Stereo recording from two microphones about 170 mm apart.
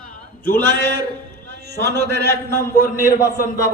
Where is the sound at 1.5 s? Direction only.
65° left (ahead or behind).